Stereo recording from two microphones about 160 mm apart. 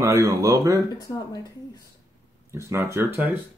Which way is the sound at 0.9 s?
25° left (ahead or behind).